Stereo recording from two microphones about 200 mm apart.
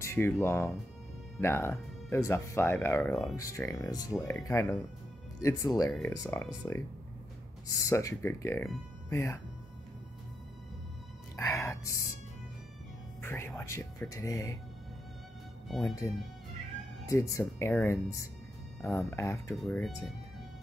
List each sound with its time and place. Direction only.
0.0 s speech: 10° left (ahead or behind)
3.3 s speech: 15° left (ahead or behind)
5.9 s speech: 5° left (ahead or behind)
6.1 s speech: 15° left (ahead or behind)
7.8 s speech: 15° left (ahead or behind)
11.3 s speech: 15° left (ahead or behind)
13.2 s speech: 10° left (ahead or behind)
15.8 s speech: 15° left (ahead or behind)
19.5 s speech: centre (ahead or behind)